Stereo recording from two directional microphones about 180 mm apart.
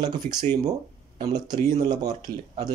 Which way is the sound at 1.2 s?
25° right (ahead or behind).